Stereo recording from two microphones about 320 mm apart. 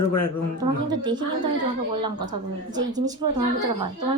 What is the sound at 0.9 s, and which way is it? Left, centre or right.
Speech, centre.